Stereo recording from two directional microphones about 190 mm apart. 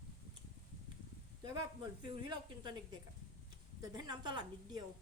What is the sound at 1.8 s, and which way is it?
Speech, 20° right (ahead or behind).